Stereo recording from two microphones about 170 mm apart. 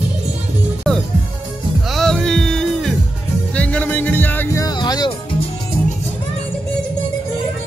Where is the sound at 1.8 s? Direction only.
Centre (ahead or behind); by 5.1 s 25° left (ahead or behind).